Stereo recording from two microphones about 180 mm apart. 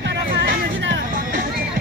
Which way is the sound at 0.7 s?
90° right.